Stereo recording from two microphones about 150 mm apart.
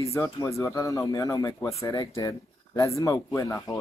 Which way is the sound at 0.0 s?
20° left (ahead or behind).